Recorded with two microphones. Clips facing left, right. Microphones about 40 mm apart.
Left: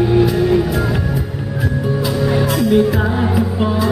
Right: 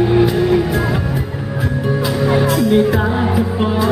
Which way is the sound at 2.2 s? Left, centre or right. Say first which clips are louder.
Right 2 dB; centre.